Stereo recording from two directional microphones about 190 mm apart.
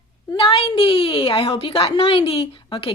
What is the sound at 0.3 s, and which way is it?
A woman's voice, 25° left (ahead or behind).